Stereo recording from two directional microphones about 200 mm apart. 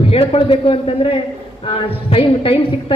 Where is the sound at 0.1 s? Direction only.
25° left (ahead or behind).